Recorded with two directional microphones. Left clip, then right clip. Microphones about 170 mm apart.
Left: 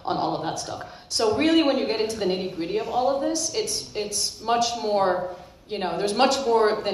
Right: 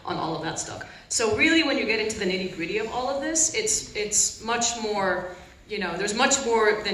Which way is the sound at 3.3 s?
35° left (ahead or behind).